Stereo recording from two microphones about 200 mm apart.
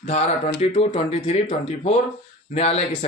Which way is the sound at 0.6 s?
35° left (ahead or behind).